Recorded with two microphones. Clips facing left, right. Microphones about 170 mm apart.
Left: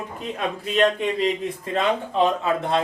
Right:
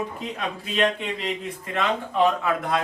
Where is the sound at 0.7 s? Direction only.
30° left (ahead or behind).